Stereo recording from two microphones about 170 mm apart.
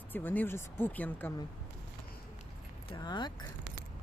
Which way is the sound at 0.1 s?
10° left (ahead or behind).